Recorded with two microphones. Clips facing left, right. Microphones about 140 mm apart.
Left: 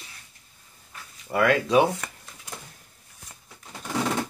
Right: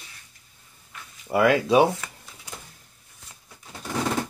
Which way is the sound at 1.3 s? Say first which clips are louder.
Right 2 dB; 15° right (ahead or behind).